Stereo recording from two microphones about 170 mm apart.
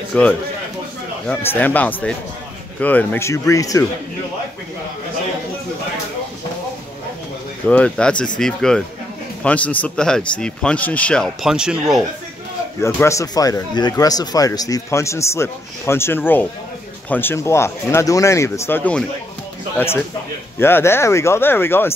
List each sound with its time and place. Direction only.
0.1 s a man's voice: 5° left (ahead or behind)
7.6 s speech: 5° left (ahead or behind)
11.4 s speech: 5° right (ahead or behind)
12.8 s speech: 15° left (ahead or behind)
20.5 s speech: 15° left (ahead or behind)